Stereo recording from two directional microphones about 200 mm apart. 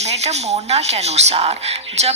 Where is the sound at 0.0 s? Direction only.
35° right (ahead or behind).